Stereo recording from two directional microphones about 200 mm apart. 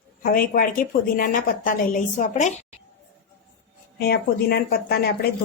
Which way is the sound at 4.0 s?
50° left (ahead or behind).